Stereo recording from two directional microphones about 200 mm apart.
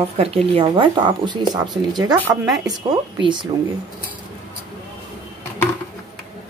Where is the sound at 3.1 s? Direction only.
25° right (ahead or behind).